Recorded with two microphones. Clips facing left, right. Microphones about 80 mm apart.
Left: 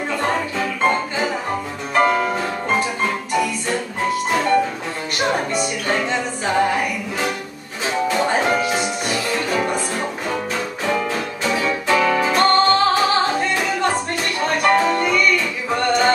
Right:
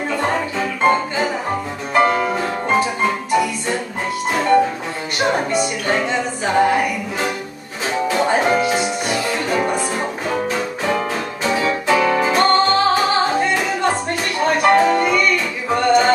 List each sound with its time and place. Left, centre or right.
0.1 s music: centre
4.3 s music: centre